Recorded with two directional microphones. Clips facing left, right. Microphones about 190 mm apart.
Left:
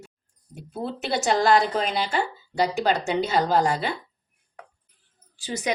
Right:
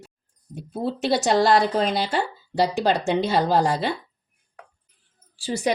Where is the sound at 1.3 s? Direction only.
35° right (ahead or behind).